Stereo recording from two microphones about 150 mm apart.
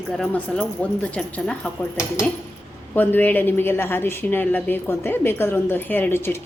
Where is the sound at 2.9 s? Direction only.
10° left (ahead or behind).